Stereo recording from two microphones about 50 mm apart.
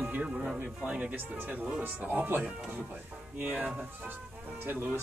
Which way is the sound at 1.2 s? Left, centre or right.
Right.